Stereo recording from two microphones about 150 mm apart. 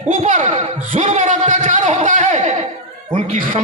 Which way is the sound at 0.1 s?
55° right (ahead or behind).